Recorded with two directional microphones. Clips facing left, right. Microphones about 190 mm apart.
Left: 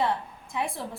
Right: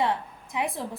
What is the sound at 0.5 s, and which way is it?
Speech, 20° right (ahead or behind).